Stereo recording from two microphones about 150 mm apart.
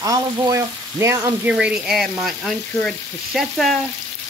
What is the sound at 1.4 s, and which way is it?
Speech, 5° right (ahead or behind).